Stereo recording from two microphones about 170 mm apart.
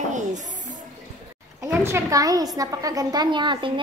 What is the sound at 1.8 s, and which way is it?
A woman's voice, 15° right (ahead or behind).